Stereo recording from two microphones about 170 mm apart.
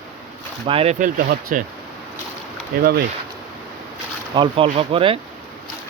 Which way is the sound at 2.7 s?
55° right (ahead or behind).